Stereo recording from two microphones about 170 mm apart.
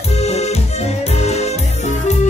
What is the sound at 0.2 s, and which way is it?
Music, 40° left (ahead or behind).